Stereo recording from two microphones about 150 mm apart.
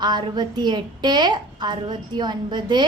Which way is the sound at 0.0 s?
30° right (ahead or behind).